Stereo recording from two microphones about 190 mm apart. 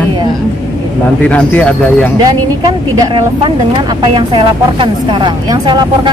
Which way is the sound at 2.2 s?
20° right (ahead or behind).